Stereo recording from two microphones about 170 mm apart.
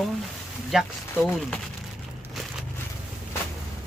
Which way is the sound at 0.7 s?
5° right (ahead or behind).